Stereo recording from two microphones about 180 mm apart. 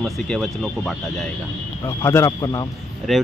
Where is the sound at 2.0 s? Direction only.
15° left (ahead or behind).